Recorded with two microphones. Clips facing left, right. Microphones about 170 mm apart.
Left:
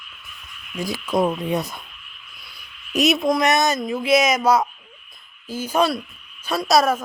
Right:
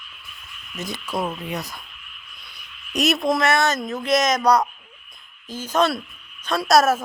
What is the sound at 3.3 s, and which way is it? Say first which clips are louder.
Speech: left 1 dB; 15° left (ahead or behind).